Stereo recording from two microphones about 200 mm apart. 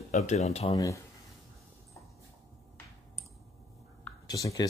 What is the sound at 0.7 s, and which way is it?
Speech, 15° left (ahead or behind).